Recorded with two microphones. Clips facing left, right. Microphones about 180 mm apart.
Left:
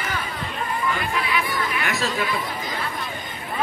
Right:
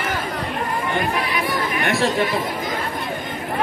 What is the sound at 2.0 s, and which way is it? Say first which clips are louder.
Speech: right 7 dB; 30° right (ahead or behind).